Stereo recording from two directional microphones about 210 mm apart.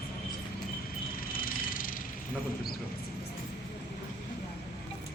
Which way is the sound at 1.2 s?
45° left (ahead or behind).